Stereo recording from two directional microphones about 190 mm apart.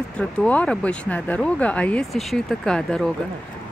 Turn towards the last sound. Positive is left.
turn(degrees=5)  # may be behind; listen again after turning